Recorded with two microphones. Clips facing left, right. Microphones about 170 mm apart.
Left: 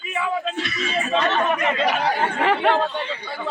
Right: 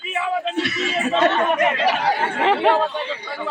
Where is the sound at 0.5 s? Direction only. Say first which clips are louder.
Right 4 dB; 70° right (ahead or behind).